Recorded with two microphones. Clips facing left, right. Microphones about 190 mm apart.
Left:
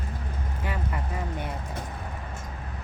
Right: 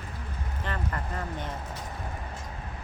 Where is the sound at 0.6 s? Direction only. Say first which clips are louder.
Left 1 dB; 10° left (ahead or behind).